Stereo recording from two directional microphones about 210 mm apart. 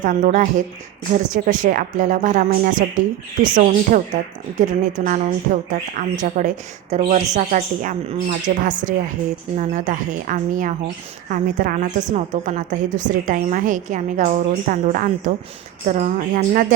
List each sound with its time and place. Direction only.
0.0 s a woman's voice: 40° right (ahead or behind)